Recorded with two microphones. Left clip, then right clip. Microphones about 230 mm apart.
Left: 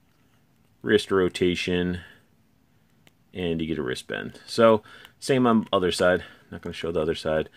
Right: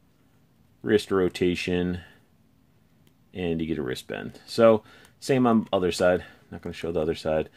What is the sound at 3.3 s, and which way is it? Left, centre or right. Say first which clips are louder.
Speech: left 1 dB; centre.